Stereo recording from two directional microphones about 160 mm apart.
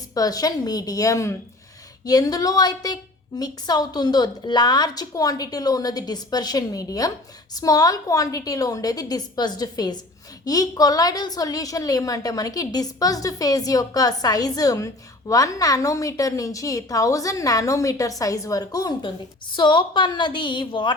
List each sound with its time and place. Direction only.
0.1 s a woman's voice: 25° left (ahead or behind)